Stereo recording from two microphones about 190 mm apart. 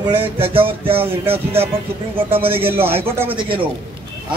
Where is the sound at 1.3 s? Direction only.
30° right (ahead or behind).